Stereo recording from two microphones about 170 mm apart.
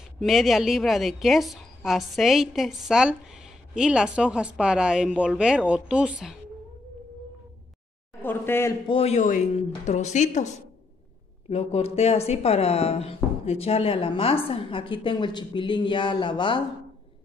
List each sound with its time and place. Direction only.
0.2 s a woman's voice: centre (ahead or behind)
8.2 s speech: 10° left (ahead or behind)
8.8 s speech: 35° left (ahead or behind)